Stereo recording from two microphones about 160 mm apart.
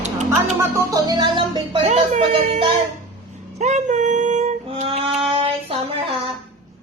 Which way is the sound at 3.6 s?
45° right (ahead or behind).